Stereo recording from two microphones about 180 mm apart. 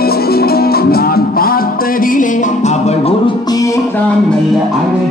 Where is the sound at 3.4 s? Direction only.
20° left (ahead or behind).